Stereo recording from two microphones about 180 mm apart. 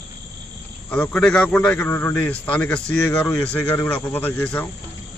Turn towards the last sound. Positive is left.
turn(degrees=10)  # may be behind; listen again after turning